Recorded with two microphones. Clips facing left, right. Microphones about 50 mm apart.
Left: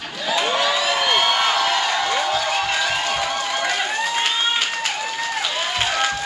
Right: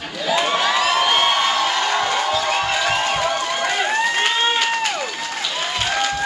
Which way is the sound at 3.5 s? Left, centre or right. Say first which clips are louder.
Right 2 dB; centre.